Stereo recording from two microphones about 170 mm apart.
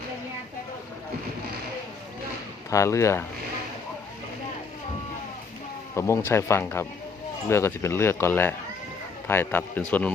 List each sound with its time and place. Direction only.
2.6 s speech: 20° left (ahead or behind)
5.9 s speech: 15° left (ahead or behind)